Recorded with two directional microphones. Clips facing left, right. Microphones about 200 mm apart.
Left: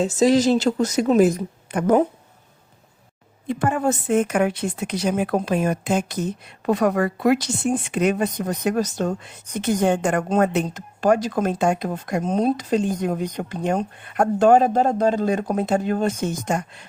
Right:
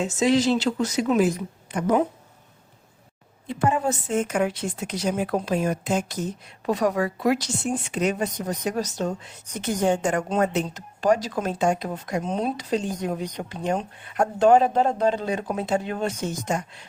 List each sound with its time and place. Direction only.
0.0 s speech: 35° left (ahead or behind)
3.4 s a woman's voice: 55° left (ahead or behind)